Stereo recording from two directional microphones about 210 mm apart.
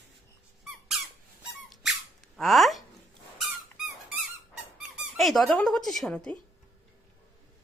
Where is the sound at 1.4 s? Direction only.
5° right (ahead or behind).